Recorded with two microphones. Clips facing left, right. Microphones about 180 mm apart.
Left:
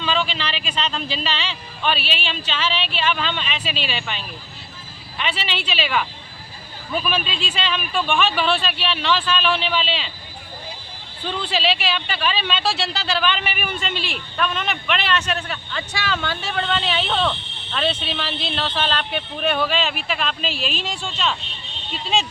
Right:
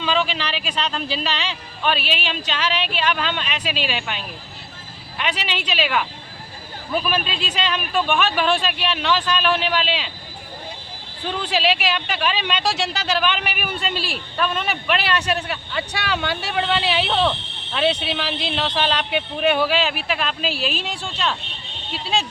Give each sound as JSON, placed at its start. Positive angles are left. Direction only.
{"t": 0.0, "sound": "a man's voice", "side_deg": -10}
{"t": 11.3, "sound": "a man's voice", "side_deg": -10}
{"t": 13.7, "sound": "a man's voice", "side_deg": -35}
{"t": 14.3, "sound": "a man's voice", "side_deg": -5}